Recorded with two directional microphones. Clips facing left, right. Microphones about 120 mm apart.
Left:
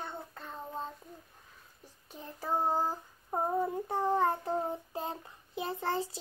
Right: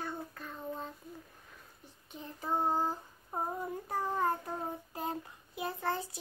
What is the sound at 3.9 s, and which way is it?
Child singing, 30° left (ahead or behind).